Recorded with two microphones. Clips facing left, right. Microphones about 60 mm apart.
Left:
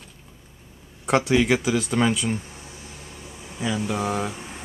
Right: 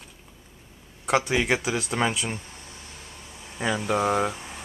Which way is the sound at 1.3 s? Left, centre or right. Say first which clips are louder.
Left 4 dB; centre.